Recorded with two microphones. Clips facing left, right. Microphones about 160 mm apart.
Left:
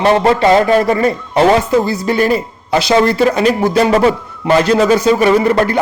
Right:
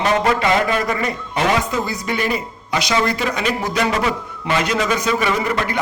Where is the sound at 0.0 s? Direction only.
35° left (ahead or behind).